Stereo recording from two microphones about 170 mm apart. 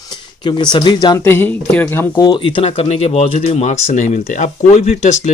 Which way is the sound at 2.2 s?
25° left (ahead or behind).